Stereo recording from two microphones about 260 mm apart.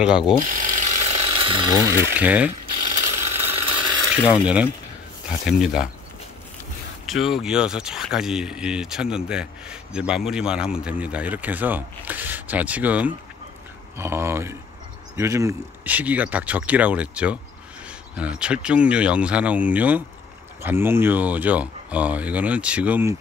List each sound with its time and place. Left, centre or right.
0.5 s mechanisms: right; by 2.5 s centre
2.5 s a sound: right
4.2 s speech: centre
7.1 s speech: centre